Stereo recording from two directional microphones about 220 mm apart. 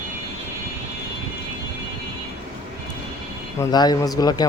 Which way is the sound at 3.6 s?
20° left (ahead or behind).